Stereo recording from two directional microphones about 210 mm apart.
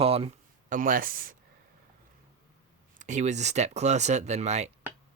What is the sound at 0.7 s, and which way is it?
Speech, 40° right (ahead or behind).